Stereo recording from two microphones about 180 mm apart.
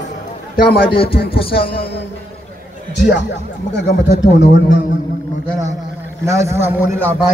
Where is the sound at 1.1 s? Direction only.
55° left (ahead or behind).